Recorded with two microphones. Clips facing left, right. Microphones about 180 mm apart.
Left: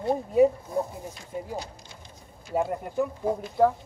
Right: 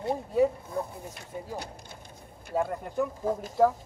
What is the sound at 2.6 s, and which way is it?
Speech, 5° left (ahead or behind).